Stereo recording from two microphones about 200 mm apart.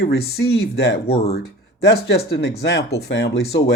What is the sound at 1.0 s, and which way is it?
Speech, 30° left (ahead or behind).